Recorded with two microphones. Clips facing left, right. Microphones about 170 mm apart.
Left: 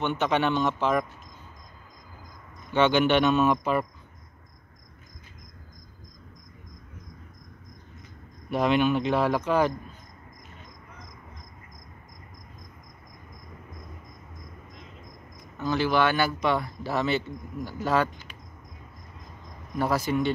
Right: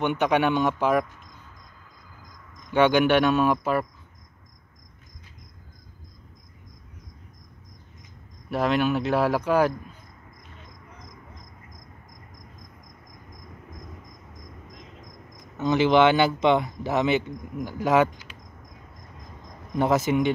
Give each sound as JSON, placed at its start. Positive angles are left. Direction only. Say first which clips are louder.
{"t": 0.0, "sound": "speech", "louder": "right 3 dB", "side_deg": -15}
{"t": 2.7, "sound": "speech", "louder": "right 2 dB", "side_deg": -10}
{"t": 8.5, "sound": "speech", "louder": "even", "side_deg": -5}
{"t": 15.5, "sound": "speech", "louder": "right 5 dB", "side_deg": -20}
{"t": 19.8, "sound": "speech", "louder": "right 4 dB", "side_deg": -20}